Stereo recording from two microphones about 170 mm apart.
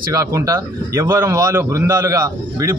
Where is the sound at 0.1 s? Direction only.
20° right (ahead or behind).